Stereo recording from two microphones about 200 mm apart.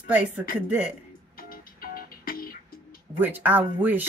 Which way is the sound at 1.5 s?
45° left (ahead or behind).